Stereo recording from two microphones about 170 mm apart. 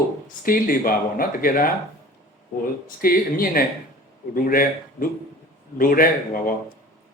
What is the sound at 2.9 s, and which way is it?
Speech, 60° left (ahead or behind).